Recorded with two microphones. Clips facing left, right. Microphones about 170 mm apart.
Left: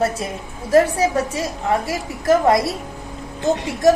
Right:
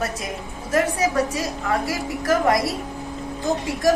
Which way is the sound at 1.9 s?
25° left (ahead or behind).